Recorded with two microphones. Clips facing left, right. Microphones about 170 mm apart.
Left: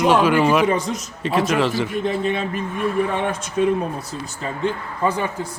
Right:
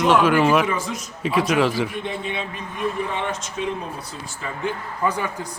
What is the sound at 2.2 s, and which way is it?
Speech, 45° left (ahead or behind).